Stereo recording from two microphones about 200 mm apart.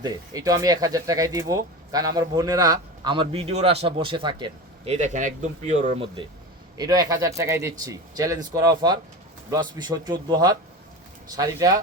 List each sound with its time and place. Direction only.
0.0 s speech: 15° right (ahead or behind)
4.9 s speech: 35° right (ahead or behind)
6.7 s speech: 20° right (ahead or behind)